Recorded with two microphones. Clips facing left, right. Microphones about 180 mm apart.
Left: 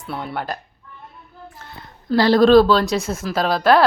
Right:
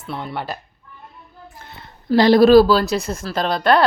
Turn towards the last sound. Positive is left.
turn(degrees=0)  # may be behind; listen again after turning